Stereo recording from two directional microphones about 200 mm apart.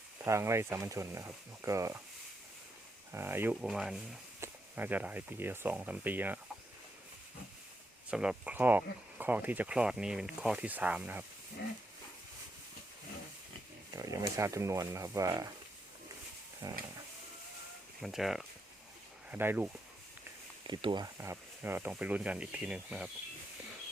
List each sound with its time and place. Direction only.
0.3 s speech: 15° right (ahead or behind)
3.1 s speech: 10° right (ahead or behind)
8.1 s speech: 5° right (ahead or behind)
13.9 s speech: 15° right (ahead or behind)
16.6 s speech: 15° right (ahead or behind)
18.0 s speech: centre (ahead or behind)
20.7 s speech: 20° right (ahead or behind); by 23.0 s 5° right (ahead or behind)